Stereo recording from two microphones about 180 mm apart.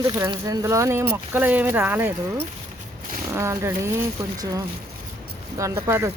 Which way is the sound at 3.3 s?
15° right (ahead or behind).